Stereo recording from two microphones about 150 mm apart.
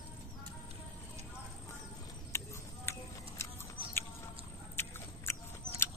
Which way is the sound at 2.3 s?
20° left (ahead or behind).